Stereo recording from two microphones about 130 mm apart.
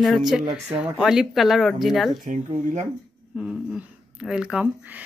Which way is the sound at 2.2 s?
70° right (ahead or behind).